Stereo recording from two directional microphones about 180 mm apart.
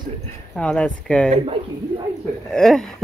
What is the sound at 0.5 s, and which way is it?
Speech, 5° left (ahead or behind).